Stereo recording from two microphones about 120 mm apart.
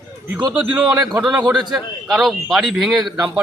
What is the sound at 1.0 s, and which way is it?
Speech, 35° right (ahead or behind).